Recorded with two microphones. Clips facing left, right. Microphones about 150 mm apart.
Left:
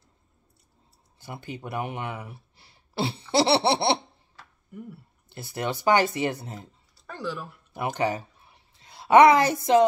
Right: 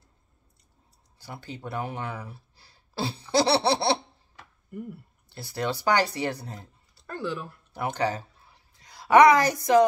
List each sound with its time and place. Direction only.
1.2 s speech: 20° left (ahead or behind)
5.3 s speech: 20° left (ahead or behind)
7.1 s speech: centre (ahead or behind)
7.7 s speech: 20° left (ahead or behind)